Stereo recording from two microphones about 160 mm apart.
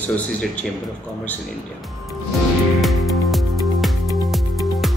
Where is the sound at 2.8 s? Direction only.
Centre (ahead or behind).